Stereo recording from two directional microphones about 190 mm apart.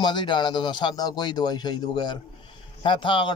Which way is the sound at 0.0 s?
25° left (ahead or behind).